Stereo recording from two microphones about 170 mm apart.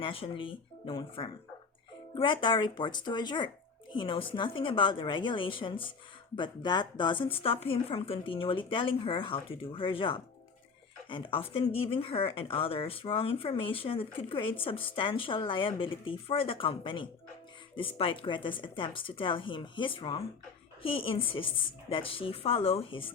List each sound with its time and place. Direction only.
0.0 s a woman's voice: 30° left (ahead or behind)